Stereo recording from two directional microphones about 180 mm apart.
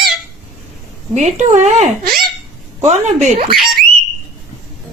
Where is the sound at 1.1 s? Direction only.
40° right (ahead or behind).